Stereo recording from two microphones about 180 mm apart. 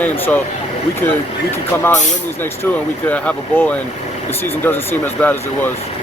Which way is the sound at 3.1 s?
5° left (ahead or behind).